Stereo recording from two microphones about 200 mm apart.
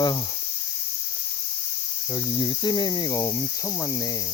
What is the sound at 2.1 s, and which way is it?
Cricket, 25° left (ahead or behind).